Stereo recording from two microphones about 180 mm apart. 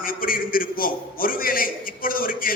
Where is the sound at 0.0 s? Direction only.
50° left (ahead or behind).